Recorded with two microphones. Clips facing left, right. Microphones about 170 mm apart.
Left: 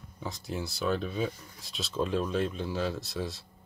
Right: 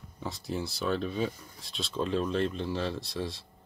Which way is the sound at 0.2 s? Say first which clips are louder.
Right 1 dB; centre (ahead or behind).